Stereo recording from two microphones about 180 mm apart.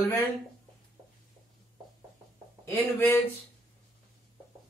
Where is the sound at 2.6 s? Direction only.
15° left (ahead or behind).